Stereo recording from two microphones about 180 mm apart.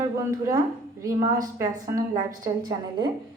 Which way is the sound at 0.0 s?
20° right (ahead or behind).